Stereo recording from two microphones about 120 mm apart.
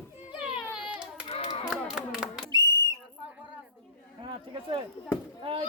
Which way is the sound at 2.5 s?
35° right (ahead or behind).